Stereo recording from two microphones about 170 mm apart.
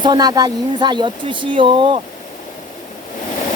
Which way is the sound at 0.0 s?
25° right (ahead or behind).